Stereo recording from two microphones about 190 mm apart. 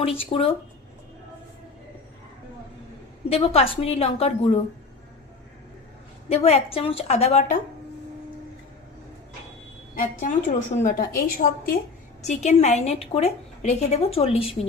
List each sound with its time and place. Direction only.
0.0 s speech: 30° left (ahead or behind)
3.2 s a woman's voice: 30° left (ahead or behind)
6.2 s a woman's voice: 30° left (ahead or behind)
9.9 s a woman's voice: 45° left (ahead or behind)